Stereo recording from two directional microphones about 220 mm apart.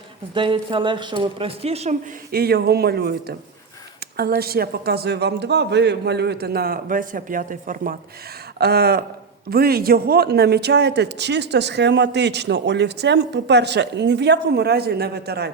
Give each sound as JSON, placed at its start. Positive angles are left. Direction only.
{"t": 0.3, "sound": "a woman's voice", "side_deg": -20}
{"t": 2.3, "sound": "speech", "side_deg": -45}